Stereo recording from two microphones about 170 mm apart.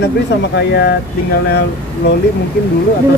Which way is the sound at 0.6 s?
75° left (ahead or behind).